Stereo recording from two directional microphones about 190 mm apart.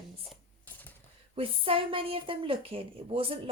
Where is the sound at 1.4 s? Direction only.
30° right (ahead or behind).